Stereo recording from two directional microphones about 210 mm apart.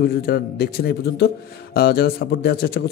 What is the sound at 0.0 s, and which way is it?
A man's voice, 50° left (ahead or behind).